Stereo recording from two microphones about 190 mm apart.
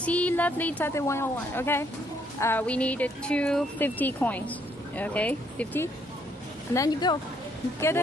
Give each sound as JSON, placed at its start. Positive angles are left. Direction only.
{"t": 0.0, "sound": "speech", "side_deg": 5}